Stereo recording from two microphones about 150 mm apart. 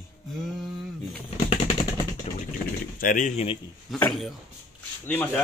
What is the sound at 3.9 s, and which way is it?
Speech, 5° left (ahead or behind).